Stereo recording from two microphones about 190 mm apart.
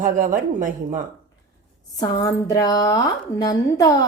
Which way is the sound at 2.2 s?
15° left (ahead or behind).